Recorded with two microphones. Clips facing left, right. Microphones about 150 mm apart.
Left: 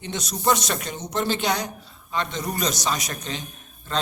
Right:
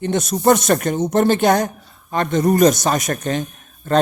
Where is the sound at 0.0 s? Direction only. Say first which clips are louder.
Right 9 dB; 50° right (ahead or behind).